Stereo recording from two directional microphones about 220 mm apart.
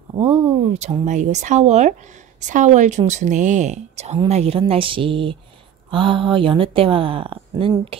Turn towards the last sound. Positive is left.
turn(degrees=-25)  # may be behind; listen again after turning